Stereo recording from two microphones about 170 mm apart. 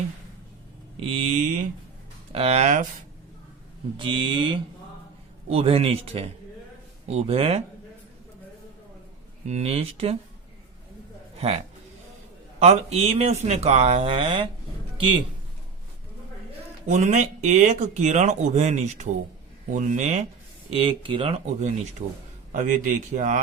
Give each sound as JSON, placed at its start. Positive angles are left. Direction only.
{"t": 0.9, "sound": "mantra", "side_deg": -35}
{"t": 2.3, "sound": "speech", "side_deg": -35}
{"t": 3.9, "sound": "speech", "side_deg": -30}
{"t": 9.5, "sound": "speech", "side_deg": -40}
{"t": 11.3, "sound": "a man's voice", "side_deg": -35}
{"t": 16.8, "sound": "speech", "side_deg": -45}